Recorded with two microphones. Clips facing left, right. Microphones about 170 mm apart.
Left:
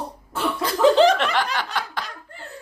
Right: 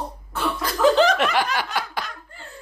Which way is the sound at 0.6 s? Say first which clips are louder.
Left 2 dB; 30° left (ahead or behind).